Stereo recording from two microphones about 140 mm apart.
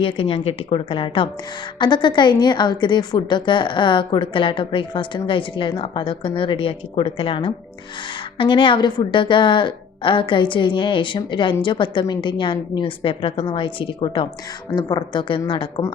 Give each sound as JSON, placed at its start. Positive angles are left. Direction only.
{"t": 0.0, "sound": "a woman's voice", "side_deg": 40}